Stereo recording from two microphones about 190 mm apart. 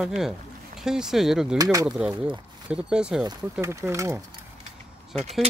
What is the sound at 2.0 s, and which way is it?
Speech, 5° right (ahead or behind).